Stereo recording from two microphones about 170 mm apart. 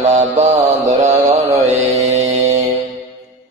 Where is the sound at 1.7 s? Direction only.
45° right (ahead or behind).